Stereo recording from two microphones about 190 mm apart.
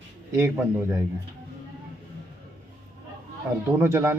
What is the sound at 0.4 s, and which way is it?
Speech, 10° right (ahead or behind).